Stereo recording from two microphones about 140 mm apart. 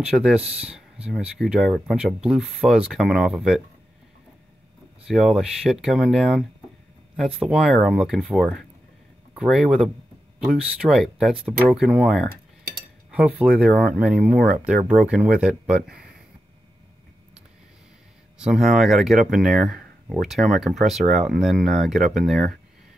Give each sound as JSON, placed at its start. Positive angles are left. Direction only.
{"t": 0.0, "sound": "speech", "side_deg": -5}
{"t": 5.0, "sound": "speech", "side_deg": -5}
{"t": 12.3, "sound": "cutlery", "side_deg": -90}
{"t": 13.1, "sound": "speech", "side_deg": -5}
{"t": 18.4, "sound": "speech", "side_deg": -5}